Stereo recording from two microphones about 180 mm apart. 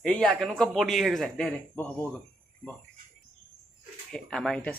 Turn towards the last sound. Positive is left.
turn(degrees=5)  # may be behind; listen again after turning